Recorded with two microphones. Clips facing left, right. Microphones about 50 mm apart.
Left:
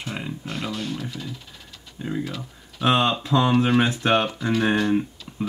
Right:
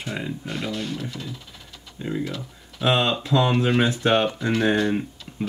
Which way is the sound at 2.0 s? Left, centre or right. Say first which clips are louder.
Right 1 dB; centre.